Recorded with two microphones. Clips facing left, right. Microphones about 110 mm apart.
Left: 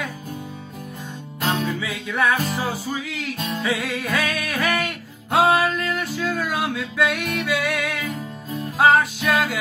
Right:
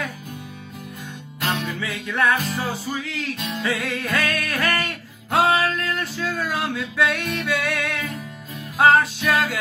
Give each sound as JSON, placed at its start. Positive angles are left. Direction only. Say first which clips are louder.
{"t": 1.8, "sound": "music", "louder": "even", "side_deg": 0}
{"t": 3.3, "sound": "music", "louder": "left 2 dB", "side_deg": 40}
{"t": 3.6, "sound": "music", "louder": "even", "side_deg": 0}